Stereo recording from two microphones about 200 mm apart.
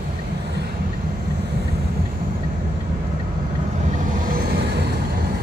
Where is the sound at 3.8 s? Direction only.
40° right (ahead or behind).